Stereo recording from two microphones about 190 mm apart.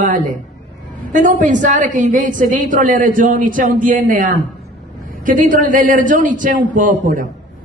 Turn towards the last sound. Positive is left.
turn(degrees=-45)  # may be behind; listen again after turning